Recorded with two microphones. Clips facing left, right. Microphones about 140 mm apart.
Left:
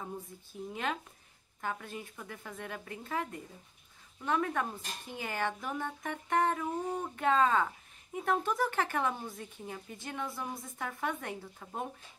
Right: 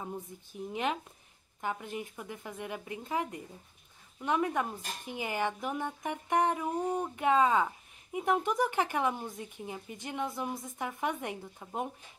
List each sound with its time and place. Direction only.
0.0 s speech: 20° right (ahead or behind)